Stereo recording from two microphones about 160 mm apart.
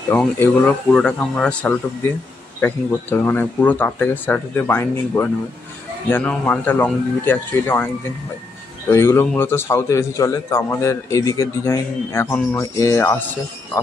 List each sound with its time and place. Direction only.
0.1 s a man's voice: 10° left (ahead or behind)